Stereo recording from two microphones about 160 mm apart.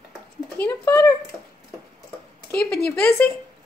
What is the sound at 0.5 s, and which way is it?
Speech, 15° left (ahead or behind).